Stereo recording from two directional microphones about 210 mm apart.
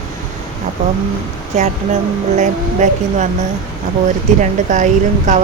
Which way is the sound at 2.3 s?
35° right (ahead or behind).